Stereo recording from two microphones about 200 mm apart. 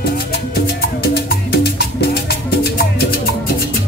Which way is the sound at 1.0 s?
55° left (ahead or behind).